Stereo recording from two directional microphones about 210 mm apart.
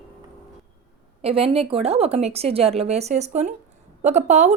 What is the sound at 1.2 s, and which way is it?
A woman's voice, 25° right (ahead or behind).